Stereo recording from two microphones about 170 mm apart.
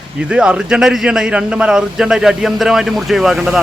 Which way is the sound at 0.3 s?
5° right (ahead or behind).